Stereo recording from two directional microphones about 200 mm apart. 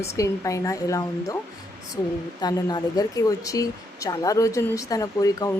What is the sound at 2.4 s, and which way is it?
Speech, 20° left (ahead or behind).